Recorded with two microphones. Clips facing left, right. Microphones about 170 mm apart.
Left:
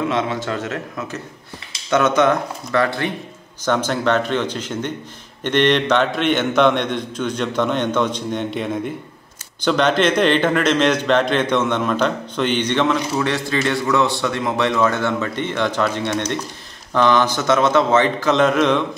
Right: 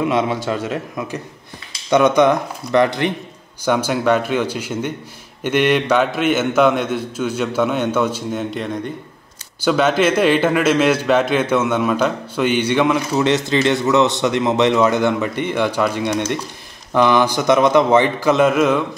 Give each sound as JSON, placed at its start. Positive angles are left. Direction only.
{"t": 0.1, "sound": "a man's voice", "side_deg": -15}